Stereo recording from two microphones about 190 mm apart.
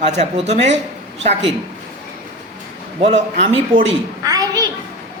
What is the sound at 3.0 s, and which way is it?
Speech, 40° right (ahead or behind).